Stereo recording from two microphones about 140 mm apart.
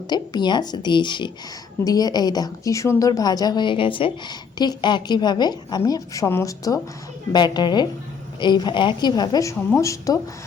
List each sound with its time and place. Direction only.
0.1 s a woman's voice: 30° left (ahead or behind)
7.3 s a woman's voice: 30° left (ahead or behind)